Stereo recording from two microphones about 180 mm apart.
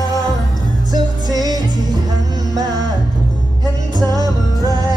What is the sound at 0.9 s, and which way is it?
Music, 20° right (ahead or behind).